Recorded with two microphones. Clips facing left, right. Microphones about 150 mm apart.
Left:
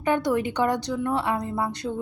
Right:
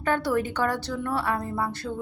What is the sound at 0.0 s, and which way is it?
A woman's voice, 15° left (ahead or behind).